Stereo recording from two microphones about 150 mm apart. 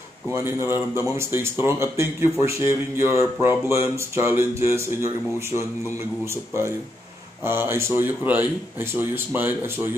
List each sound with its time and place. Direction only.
0.3 s speech: 15° right (ahead or behind)
7.4 s speech: 15° right (ahead or behind)